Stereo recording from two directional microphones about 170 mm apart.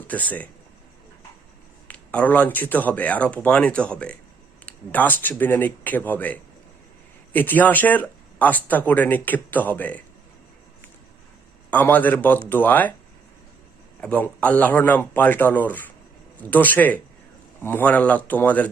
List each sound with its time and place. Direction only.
0.1 s speech: 10° left (ahead or behind)
1.9 s speech: 5° left (ahead or behind)
11.7 s speech: 10° left (ahead or behind)
14.0 s speech: 10° left (ahead or behind)